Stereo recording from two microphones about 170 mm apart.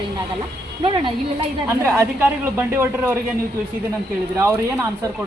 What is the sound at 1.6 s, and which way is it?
Speech, 15° right (ahead or behind).